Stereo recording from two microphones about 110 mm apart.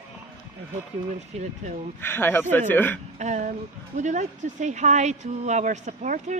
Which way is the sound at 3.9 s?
90° right.